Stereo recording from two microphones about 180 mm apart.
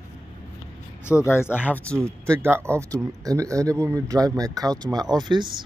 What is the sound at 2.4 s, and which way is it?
Speech, 15° right (ahead or behind).